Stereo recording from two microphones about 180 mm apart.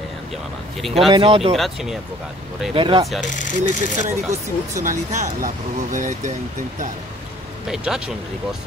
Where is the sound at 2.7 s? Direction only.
25° right (ahead or behind).